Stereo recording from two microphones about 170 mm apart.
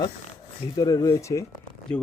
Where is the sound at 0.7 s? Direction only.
20° left (ahead or behind).